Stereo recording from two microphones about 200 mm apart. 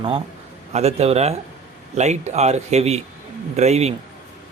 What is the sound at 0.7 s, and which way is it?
Speech, 30° right (ahead or behind).